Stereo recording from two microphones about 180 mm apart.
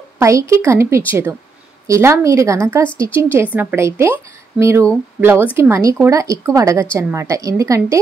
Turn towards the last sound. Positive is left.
turn(degrees=-15)  # may be behind; listen again after turning